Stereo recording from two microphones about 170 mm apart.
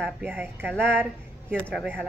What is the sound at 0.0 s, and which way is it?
Speech, 10° right (ahead or behind).